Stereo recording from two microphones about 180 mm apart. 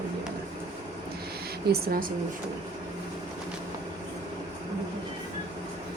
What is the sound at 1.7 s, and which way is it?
Speech, 55° right (ahead or behind).